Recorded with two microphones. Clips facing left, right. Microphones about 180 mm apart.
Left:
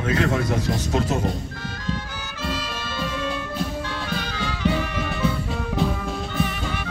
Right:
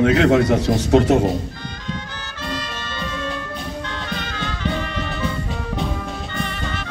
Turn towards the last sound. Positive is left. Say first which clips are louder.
# left 1 dB
turn(degrees=10)  # may be behind; listen again after turning